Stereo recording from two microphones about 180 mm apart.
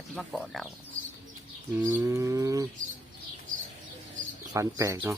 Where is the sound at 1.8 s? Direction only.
15° right (ahead or behind).